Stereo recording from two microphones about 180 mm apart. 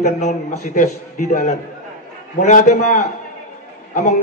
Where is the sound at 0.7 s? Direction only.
45° left (ahead or behind).